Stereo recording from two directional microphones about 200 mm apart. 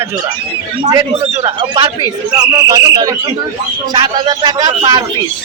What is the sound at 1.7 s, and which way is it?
Speech, 20° right (ahead or behind).